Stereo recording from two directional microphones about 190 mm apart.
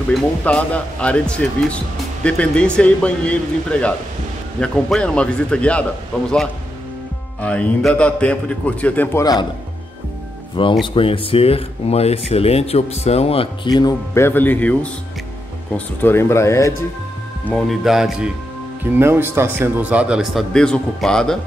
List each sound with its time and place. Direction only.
0.1 s a man's voice: 5° left (ahead or behind)
4.6 s speech: 5° left (ahead or behind)
7.4 s a man's voice: 5° left (ahead or behind)
9.2 s speech: 20° left (ahead or behind)
10.5 s speech: 25° left (ahead or behind)
13.7 s a man's voice: 15° left (ahead or behind)
17.5 s speech: centre (ahead or behind)